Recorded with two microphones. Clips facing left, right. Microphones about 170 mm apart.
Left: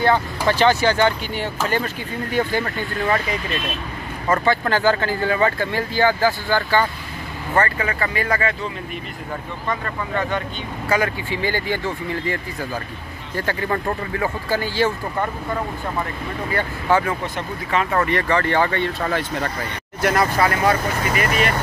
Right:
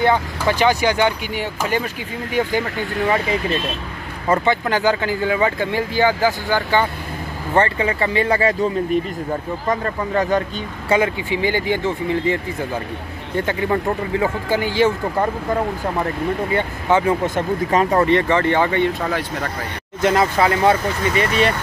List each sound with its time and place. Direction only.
0.0 s speech: 15° right (ahead or behind)
4.3 s speech: 15° right (ahead or behind)
9.7 s speech: 40° right (ahead or behind)
10.9 s speech: 20° right (ahead or behind)
16.5 s speech: 20° right (ahead or behind)
17.4 s speech: 40° right (ahead or behind)
17.9 s speech: 20° right (ahead or behind)
19.0 s speech: centre (ahead or behind)
20.0 s speech: 20° right (ahead or behind)